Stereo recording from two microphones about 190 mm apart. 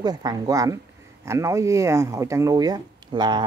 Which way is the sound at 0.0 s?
20° right (ahead or behind).